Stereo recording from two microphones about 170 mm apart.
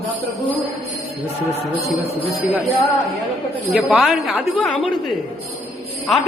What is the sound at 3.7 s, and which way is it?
A woman's voice, 5° right (ahead or behind).